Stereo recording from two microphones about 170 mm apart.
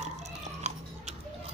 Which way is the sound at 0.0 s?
40° right (ahead or behind).